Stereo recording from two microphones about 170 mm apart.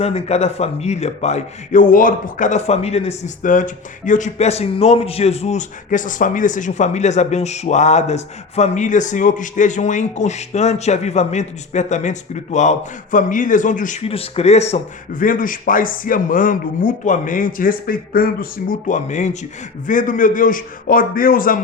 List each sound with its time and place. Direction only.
0.0 s a man's voice: 40° left (ahead or behind)
14.1 s speech: 35° left (ahead or behind)
15.1 s a man's voice: 55° left (ahead or behind)